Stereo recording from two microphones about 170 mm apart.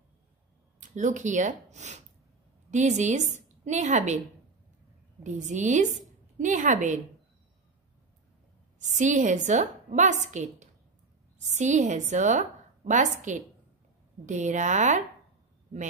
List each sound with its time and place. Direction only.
0.7 s a woman's voice: 45° right (ahead or behind)
5.2 s a woman's voice: 45° right (ahead or behind)
8.7 s a woman's voice: 45° right (ahead or behind)